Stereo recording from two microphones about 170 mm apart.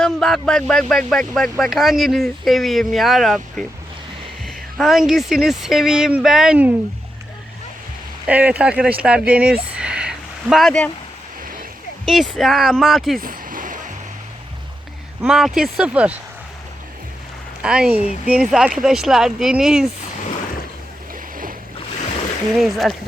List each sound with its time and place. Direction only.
0.0 s speech: centre (ahead or behind)
8.3 s speech: 10° right (ahead or behind)
12.0 s speech: centre (ahead or behind)
13.2 s a sound: 55° right (ahead or behind)
15.2 s speech: centre (ahead or behind)
17.6 s speech: 5° right (ahead or behind)
22.6 s speech: centre (ahead or behind)